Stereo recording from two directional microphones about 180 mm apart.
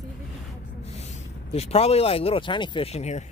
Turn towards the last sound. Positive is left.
turn(degrees=40)  # may be behind; listen again after turning